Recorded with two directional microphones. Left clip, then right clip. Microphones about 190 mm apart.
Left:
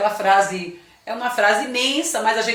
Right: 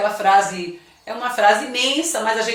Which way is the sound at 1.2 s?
20° left (ahead or behind).